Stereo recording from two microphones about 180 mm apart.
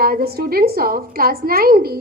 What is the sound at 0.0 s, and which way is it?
A woman's voice, 60° right (ahead or behind).